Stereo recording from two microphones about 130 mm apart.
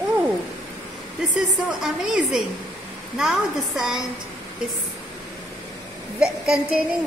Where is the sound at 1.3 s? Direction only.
75° left (ahead or behind).